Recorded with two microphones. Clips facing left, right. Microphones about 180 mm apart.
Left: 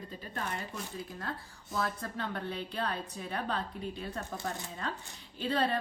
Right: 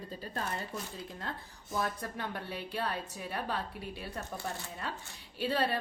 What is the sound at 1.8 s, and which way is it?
A woman's voice, 10° right (ahead or behind).